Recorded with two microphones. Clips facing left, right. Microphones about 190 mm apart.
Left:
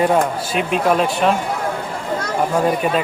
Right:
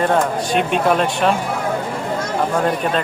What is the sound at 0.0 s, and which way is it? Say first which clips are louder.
Speech: left 1 dB; 5° left (ahead or behind).